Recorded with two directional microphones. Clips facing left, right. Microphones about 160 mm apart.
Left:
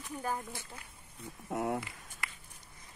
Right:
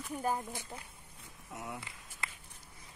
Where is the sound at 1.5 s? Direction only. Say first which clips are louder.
Left 10 dB; 55° left (ahead or behind).